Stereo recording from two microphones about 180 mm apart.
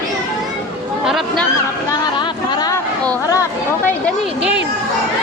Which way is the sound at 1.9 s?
25° left (ahead or behind).